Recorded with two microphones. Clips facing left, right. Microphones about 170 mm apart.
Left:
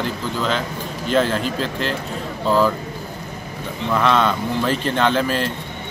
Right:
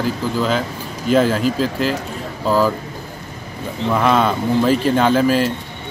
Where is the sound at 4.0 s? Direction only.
5° right (ahead or behind).